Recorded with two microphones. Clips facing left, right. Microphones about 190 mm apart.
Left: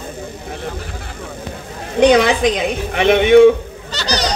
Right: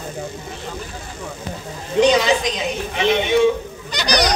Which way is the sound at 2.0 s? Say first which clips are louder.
Left 4 dB; 55° left (ahead or behind).